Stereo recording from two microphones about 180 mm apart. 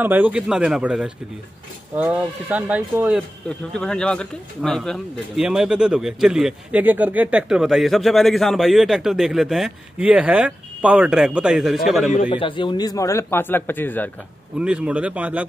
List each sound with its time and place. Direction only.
0.0 s speech: 10° right (ahead or behind)
3.4 s speech: 5° left (ahead or behind)
12.3 s a man's voice: 25° left (ahead or behind); by 14.1 s 10° left (ahead or behind)
14.6 s speech: 5° right (ahead or behind)